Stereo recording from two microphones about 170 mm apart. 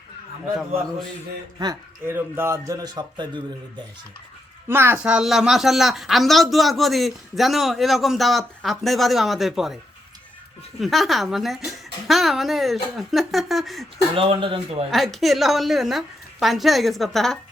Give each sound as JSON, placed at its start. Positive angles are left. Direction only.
{"t": 1.5, "sound": "speech", "side_deg": -15}
{"t": 4.7, "sound": "a woman's voice", "side_deg": -15}
{"t": 10.8, "sound": "a woman's voice", "side_deg": 0}
{"t": 14.2, "sound": "speech", "side_deg": -30}
{"t": 14.8, "sound": "a woman's voice", "side_deg": 0}